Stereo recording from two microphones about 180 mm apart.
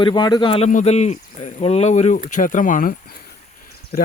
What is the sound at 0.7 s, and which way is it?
Speech, 40° left (ahead or behind).